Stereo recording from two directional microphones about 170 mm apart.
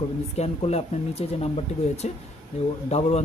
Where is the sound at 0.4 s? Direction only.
40° left (ahead or behind).